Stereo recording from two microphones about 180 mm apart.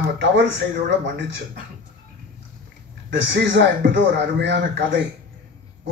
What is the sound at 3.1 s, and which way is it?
A man's voice, 85° right.